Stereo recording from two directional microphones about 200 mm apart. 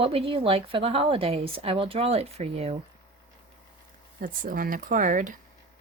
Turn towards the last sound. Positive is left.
turn(degrees=-40)  # may be behind; listen again after turning